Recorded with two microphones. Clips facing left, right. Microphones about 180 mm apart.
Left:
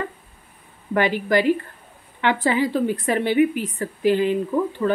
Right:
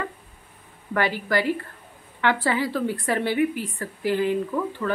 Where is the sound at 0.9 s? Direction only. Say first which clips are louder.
Left 4 dB; 20° left (ahead or behind).